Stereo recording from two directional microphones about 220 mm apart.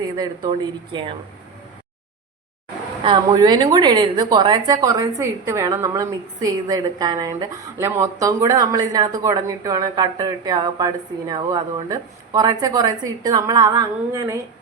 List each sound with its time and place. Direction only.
0.2 s speech: 20° right (ahead or behind)
3.0 s a woman's voice: 20° right (ahead or behind)